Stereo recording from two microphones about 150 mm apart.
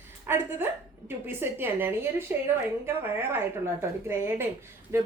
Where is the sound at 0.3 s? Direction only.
15° right (ahead or behind).